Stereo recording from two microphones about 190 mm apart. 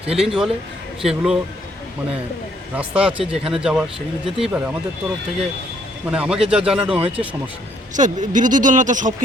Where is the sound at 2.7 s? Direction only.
5° right (ahead or behind).